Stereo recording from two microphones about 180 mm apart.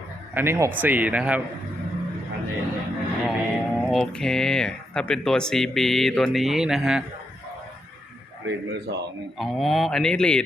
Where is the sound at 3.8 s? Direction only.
Centre (ahead or behind).